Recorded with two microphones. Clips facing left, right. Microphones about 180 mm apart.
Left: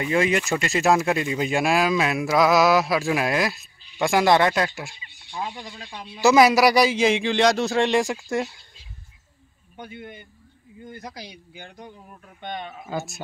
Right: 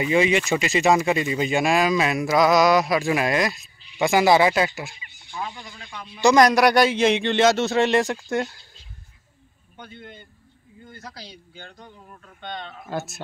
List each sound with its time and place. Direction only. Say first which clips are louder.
0.0 s speech: right 2 dB; centre (ahead or behind)
5.3 s speech: left 1 dB; 20° left (ahead or behind)
6.2 s speech: even; 5° left (ahead or behind)
9.8 s a man's voice: left 3 dB; 10° left (ahead or behind)
12.8 s speech: right 2 dB; centre (ahead or behind)